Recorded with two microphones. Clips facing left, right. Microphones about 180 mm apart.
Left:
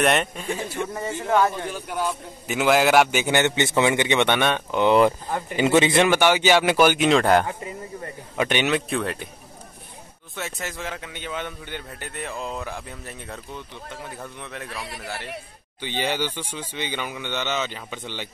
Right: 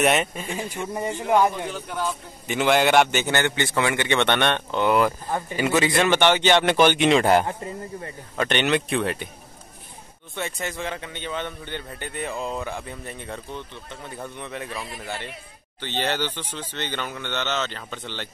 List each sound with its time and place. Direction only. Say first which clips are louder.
0.0 s a man's voice: even; centre (ahead or behind)
0.6 s a man's voice: even; 15° right (ahead or behind)
1.7 s a man's voice: left 1 dB; 10° left (ahead or behind)
6.0 s a man's voice: even; 10° left (ahead or behind)
8.4 s a man's voice: even; 10° left (ahead or behind)
10.3 s a man's voice: right 2 dB; centre (ahead or behind)
15.8 s a man's voice: even; 10° left (ahead or behind)